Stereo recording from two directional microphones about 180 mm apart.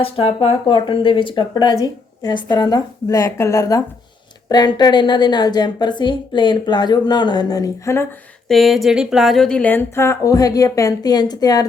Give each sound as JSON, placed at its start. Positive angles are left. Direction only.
{"t": 0.0, "sound": "a woman's voice", "side_deg": 30}
{"t": 8.4, "sound": "a woman's voice", "side_deg": 0}